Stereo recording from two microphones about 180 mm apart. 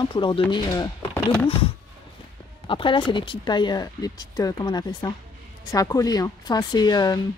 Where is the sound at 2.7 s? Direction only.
30° left (ahead or behind).